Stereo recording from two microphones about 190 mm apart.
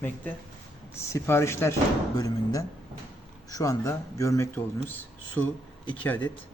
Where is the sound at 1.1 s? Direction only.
15° left (ahead or behind).